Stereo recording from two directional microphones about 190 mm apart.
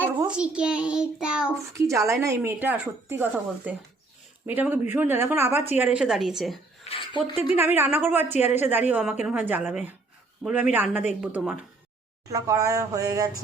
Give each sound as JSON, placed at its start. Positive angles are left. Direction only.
{"t": 0.0, "sound": "a child's voice", "side_deg": -5}
{"t": 1.7, "sound": "a woman's voice", "side_deg": -15}
{"t": 6.8, "sound": "speech", "side_deg": 30}
{"t": 7.5, "sound": "a woman's voice", "side_deg": -10}